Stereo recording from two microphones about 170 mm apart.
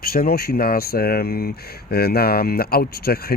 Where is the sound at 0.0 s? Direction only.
60° left (ahead or behind).